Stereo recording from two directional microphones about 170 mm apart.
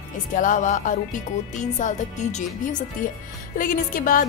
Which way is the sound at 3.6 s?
55° left (ahead or behind).